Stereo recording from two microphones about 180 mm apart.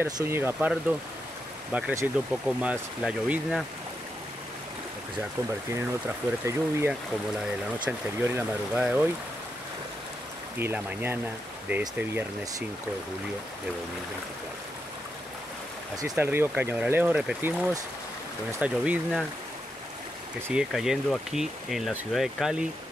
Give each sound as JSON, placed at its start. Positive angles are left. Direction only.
{"t": 0.0, "sound": "speech", "side_deg": -15}
{"t": 5.8, "sound": "speech", "side_deg": -15}
{"t": 8.4, "sound": "speech", "side_deg": -5}
{"t": 10.6, "sound": "speech", "side_deg": -10}
{"t": 16.0, "sound": "speech", "side_deg": -10}
{"t": 20.4, "sound": "speech", "side_deg": -5}